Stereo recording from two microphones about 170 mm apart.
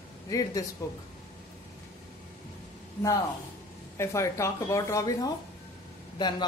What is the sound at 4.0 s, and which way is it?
A man's voice, 15° left (ahead or behind).